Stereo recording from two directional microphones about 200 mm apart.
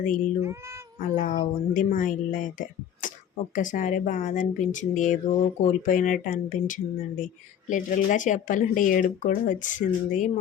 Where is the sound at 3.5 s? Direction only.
40° left (ahead or behind).